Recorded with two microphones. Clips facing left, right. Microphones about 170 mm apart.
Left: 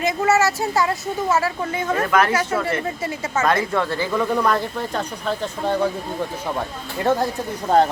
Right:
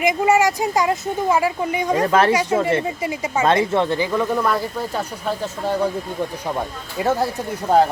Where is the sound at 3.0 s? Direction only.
15° right (ahead or behind).